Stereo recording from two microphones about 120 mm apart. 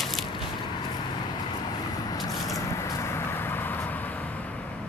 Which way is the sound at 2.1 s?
25° left (ahead or behind).